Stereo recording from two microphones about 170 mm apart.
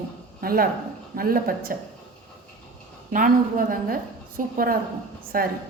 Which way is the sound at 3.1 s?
55° right (ahead or behind).